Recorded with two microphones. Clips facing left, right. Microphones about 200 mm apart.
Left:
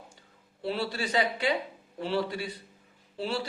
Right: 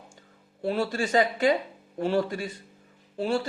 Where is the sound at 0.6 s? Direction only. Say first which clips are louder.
Right 5 dB; 45° right (ahead or behind).